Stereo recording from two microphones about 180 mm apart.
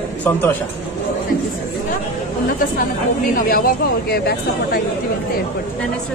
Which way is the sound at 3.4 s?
55° left (ahead or behind).